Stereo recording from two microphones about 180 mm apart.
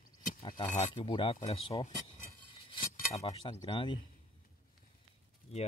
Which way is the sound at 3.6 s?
25° left (ahead or behind).